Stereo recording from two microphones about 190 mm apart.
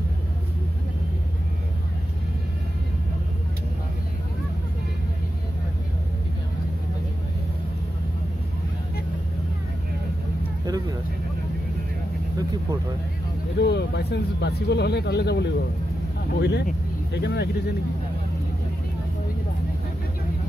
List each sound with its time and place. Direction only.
10.6 s vehicle: 20° right (ahead or behind)
13.6 s speech: 60° left (ahead or behind)